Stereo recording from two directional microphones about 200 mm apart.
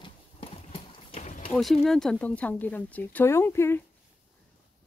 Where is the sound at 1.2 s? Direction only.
40° left (ahead or behind).